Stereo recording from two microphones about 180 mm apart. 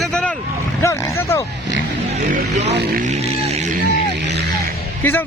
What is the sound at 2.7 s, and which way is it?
Speech, 70° right (ahead or behind).